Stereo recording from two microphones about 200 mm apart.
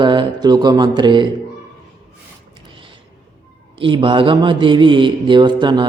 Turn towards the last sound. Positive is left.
turn(degrees=-20)  # may be behind; listen again after turning